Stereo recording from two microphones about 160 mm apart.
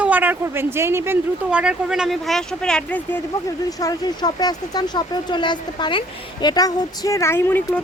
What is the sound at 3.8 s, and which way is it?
Speech, 25° left (ahead or behind).